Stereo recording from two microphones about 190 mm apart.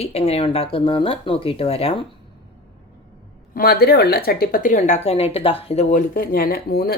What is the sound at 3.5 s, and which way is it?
A woman's voice, 55° left (ahead or behind).